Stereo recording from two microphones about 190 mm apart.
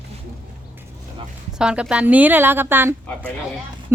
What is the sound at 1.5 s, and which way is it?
A woman's voice, 5° right (ahead or behind).